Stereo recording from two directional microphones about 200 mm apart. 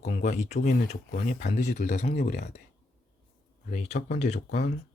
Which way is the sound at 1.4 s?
35° left (ahead or behind).